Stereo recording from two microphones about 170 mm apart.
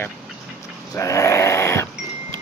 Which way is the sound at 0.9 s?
20° left (ahead or behind).